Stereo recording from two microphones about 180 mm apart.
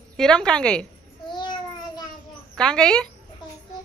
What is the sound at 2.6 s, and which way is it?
Speech, 5° left (ahead or behind).